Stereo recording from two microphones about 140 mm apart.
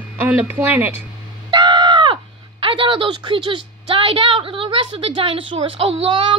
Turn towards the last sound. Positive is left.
turn(degrees=-40)  # may be behind; listen again after turning